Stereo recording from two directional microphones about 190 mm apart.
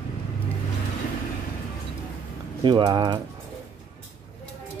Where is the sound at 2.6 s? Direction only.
25° right (ahead or behind).